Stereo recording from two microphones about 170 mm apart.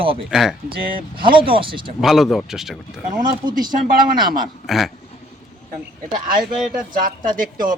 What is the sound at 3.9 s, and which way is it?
Speech, 60° right (ahead or behind).